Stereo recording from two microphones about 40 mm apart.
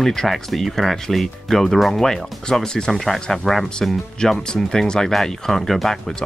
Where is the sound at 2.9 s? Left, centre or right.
Centre.